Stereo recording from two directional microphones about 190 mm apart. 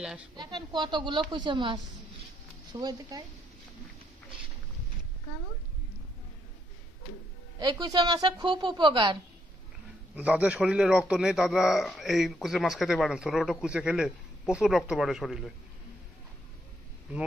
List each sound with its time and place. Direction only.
0.0 s a man's voice: 5° right (ahead or behind)
0.4 s a woman's voice: 25° right (ahead or behind)
7.5 s a woman's voice: 20° right (ahead or behind)
10.1 s a man's voice: 5° right (ahead or behind)